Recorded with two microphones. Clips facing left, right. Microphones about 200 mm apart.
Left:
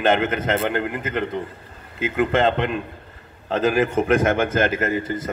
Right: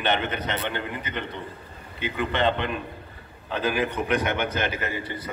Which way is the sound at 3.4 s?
45° left (ahead or behind).